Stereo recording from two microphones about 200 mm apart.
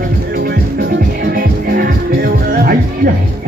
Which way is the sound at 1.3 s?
50° right (ahead or behind).